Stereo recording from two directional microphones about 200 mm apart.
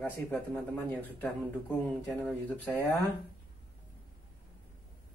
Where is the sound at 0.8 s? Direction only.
10° left (ahead or behind).